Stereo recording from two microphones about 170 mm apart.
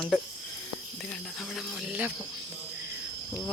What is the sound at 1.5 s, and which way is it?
Speech, 5° right (ahead or behind).